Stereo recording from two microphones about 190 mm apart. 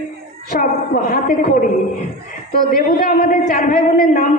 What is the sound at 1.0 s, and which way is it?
Speech, 45° left (ahead or behind).